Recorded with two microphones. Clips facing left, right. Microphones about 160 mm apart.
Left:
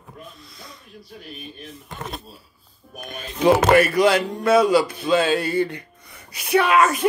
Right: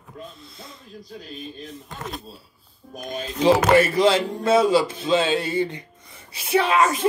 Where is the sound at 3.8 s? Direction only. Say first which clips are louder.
Left 1 dB; 25° right (ahead or behind).